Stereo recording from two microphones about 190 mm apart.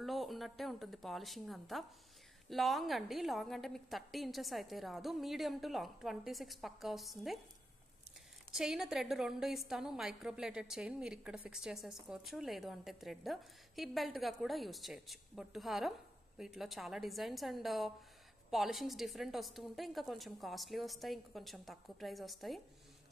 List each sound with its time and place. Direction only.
0.0 s a woman's voice: centre (ahead or behind)
8.5 s a woman's voice: 5° right (ahead or behind)